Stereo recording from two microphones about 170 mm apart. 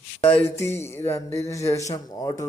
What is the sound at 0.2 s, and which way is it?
Music, 10° left (ahead or behind).